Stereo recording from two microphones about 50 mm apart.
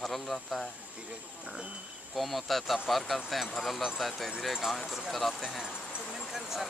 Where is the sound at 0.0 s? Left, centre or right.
Centre.